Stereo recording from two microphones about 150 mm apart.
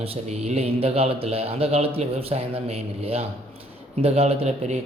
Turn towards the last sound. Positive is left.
turn(degrees=-45)  # may be behind; listen again after turning